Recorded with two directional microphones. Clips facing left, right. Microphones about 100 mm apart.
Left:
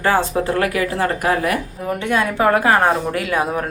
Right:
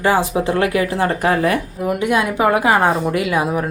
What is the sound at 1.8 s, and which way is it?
Speech, 15° right (ahead or behind).